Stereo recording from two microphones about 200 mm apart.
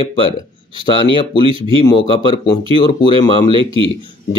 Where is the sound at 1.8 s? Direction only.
25° left (ahead or behind).